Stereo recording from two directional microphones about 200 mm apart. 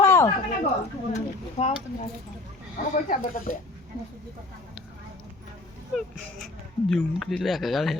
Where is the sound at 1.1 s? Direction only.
35° left (ahead or behind).